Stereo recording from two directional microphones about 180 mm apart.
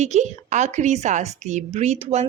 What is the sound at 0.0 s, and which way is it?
A woman's voice, 40° right (ahead or behind).